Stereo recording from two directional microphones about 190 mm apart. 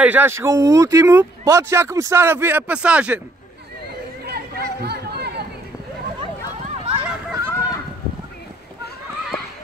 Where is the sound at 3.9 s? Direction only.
55° right (ahead or behind).